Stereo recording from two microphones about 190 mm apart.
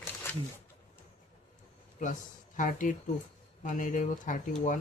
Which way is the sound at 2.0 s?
40° left (ahead or behind).